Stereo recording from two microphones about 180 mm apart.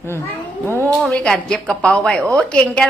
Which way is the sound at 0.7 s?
15° right (ahead or behind).